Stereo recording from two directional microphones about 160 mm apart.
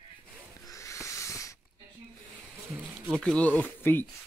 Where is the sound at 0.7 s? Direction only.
20° left (ahead or behind).